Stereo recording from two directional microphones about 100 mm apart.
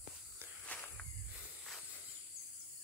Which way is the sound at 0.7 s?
15° left (ahead or behind).